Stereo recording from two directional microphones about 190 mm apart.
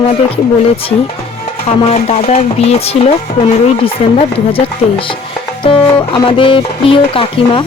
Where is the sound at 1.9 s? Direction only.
35° left (ahead or behind).